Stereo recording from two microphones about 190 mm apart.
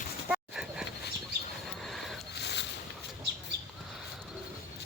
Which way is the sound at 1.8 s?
Centre (ahead or behind).